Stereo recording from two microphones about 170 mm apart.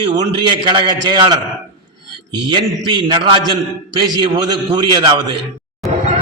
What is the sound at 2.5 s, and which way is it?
A man's voice, 25° right (ahead or behind).